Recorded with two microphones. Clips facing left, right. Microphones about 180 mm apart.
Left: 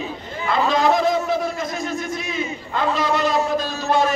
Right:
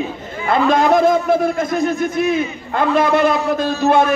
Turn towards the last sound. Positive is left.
turn(degrees=-55)  # may be behind; listen again after turning